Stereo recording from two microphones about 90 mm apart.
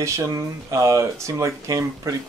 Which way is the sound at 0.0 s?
35° right (ahead or behind).